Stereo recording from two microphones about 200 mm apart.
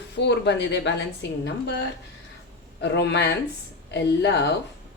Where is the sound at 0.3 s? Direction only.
60° left (ahead or behind).